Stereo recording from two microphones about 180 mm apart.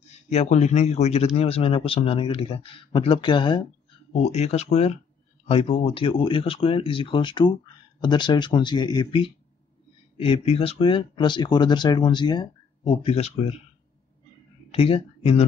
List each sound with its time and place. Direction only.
0.3 s speech: 35° left (ahead or behind)
4.2 s speech: 35° left (ahead or behind)
14.7 s speech: 35° left (ahead or behind)